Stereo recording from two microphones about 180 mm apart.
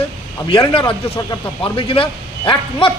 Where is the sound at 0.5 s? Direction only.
30° left (ahead or behind).